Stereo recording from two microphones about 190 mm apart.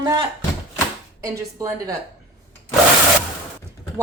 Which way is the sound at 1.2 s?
15° right (ahead or behind).